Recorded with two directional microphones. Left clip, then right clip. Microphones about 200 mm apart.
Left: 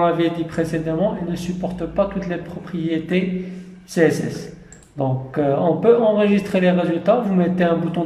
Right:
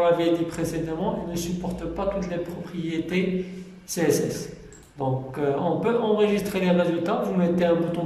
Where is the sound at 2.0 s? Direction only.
40° left (ahead or behind).